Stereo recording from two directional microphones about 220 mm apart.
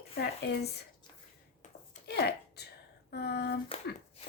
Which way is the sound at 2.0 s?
50° left (ahead or behind).